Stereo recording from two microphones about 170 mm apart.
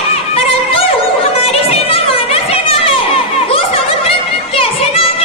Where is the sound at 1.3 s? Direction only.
35° left (ahead or behind).